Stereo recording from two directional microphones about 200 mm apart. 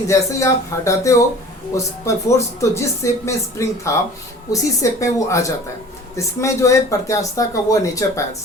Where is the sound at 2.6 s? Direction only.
15° left (ahead or behind).